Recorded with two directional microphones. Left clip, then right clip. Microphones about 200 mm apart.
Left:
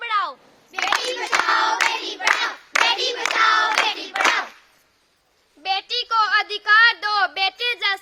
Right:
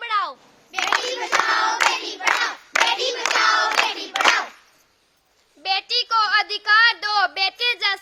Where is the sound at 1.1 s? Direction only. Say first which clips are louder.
Even; 50° left (ahead or behind).